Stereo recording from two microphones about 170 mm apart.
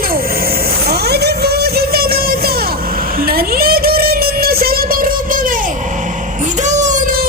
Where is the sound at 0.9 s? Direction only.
70° right (ahead or behind).